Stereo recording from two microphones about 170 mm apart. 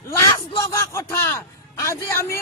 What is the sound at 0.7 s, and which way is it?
A man's voice, 15° left (ahead or behind).